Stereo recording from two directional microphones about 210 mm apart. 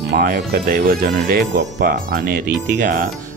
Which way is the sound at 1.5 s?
55° right (ahead or behind).